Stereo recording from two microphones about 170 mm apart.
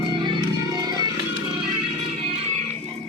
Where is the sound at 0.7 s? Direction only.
25° right (ahead or behind).